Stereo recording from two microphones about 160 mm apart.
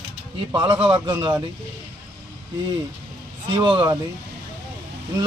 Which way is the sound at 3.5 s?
30° right (ahead or behind).